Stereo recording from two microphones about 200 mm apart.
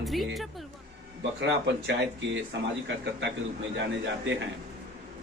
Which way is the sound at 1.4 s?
60° right (ahead or behind).